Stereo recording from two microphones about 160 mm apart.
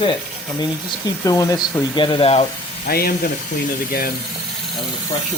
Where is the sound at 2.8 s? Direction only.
70° left (ahead or behind).